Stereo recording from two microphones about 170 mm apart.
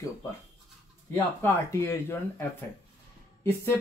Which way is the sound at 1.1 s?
15° left (ahead or behind).